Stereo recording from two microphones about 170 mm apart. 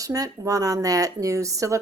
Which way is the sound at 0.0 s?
20° right (ahead or behind).